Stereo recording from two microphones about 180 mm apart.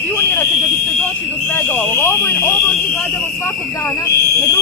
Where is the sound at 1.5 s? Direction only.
10° left (ahead or behind).